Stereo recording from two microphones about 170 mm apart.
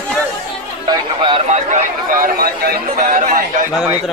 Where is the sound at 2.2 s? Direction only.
60° right (ahead or behind).